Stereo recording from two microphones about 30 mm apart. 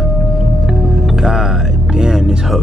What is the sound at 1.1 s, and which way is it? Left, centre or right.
Speech, centre.